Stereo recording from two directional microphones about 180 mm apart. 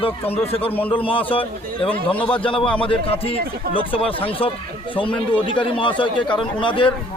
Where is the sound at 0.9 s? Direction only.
30° left (ahead or behind).